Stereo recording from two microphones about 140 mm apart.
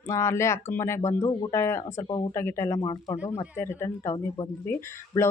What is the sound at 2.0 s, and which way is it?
Speech, 30° left (ahead or behind).